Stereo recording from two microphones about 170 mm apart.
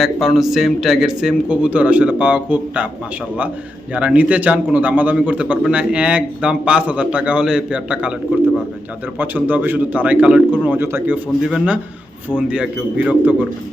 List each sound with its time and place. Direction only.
0.0 s speech: centre (ahead or behind)
3.9 s a man's voice: 10° right (ahead or behind)
9.1 s a man's voice: 10° right (ahead or behind)